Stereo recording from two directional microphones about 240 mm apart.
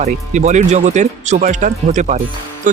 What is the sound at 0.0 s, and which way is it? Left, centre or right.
Speech, right.